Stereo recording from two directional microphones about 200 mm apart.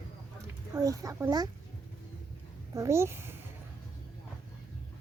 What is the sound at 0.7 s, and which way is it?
Speech, 15° right (ahead or behind).